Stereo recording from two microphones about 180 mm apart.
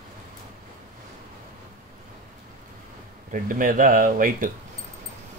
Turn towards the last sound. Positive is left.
turn(degrees=-50)  # may be behind; listen again after turning